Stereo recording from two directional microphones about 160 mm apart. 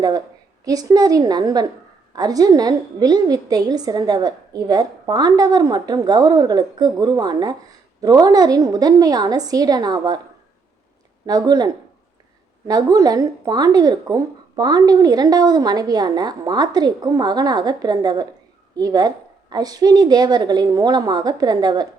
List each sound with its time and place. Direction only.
0.6 s speech: 25° right (ahead or behind)
11.3 s speech: 25° right (ahead or behind)